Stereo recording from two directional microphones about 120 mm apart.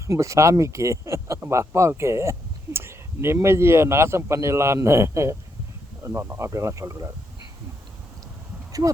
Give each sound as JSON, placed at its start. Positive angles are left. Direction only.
{"t": 0.1, "sound": "a man's voice", "side_deg": -25}